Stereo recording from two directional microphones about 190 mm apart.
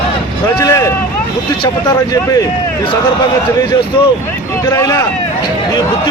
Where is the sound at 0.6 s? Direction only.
15° left (ahead or behind).